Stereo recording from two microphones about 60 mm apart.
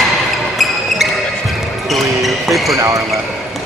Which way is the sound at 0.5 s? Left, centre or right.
Centre.